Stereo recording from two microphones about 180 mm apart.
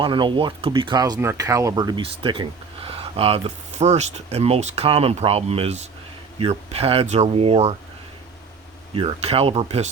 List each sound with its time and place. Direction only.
0.0 s speech: 25° right (ahead or behind)
8.9 s speech: 30° right (ahead or behind)